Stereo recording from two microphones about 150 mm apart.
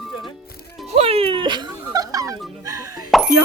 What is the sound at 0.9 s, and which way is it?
Music, 40° right (ahead or behind).